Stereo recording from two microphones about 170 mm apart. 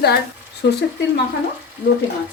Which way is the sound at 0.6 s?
90° left.